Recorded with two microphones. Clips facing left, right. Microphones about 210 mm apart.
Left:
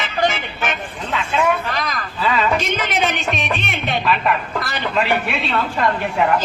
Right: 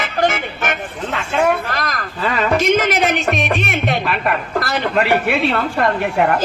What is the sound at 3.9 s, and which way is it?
A man's voice, 60° right (ahead or behind).